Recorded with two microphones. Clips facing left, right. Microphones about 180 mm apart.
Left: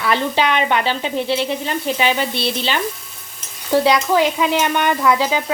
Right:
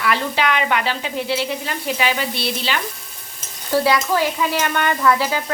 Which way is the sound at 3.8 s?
20° left (ahead or behind).